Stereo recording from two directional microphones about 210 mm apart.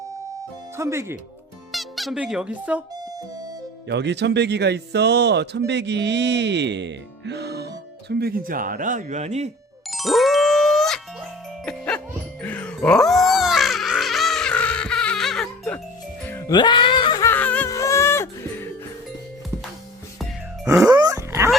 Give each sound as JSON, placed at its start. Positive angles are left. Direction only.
{"t": 0.8, "sound": "speech", "side_deg": -10}
{"t": 1.7, "sound": "speech", "side_deg": 0}
{"t": 2.9, "sound": "music", "side_deg": -20}
{"t": 3.8, "sound": "speech", "side_deg": -55}
{"t": 9.9, "sound": "music", "side_deg": 0}
{"t": 16.6, "sound": "a sound", "side_deg": 20}
{"t": 20.8, "sound": "dog", "side_deg": -20}